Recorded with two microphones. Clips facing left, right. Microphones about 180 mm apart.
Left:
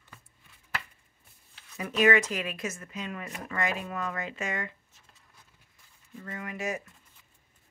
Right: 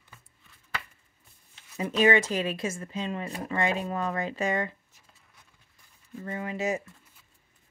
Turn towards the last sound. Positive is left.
turn(degrees=-25)  # may be behind; listen again after turning